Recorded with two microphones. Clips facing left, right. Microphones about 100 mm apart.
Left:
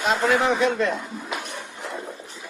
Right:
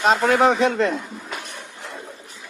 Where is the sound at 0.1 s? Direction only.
90° right.